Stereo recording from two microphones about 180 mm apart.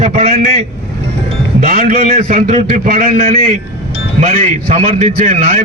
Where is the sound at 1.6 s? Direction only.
50° right (ahead or behind).